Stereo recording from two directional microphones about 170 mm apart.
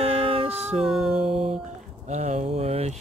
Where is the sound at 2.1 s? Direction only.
40° right (ahead or behind).